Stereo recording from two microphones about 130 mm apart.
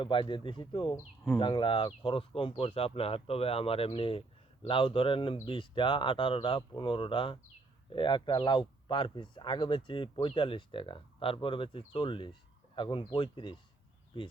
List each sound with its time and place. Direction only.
0.0 s speech: 40° left (ahead or behind)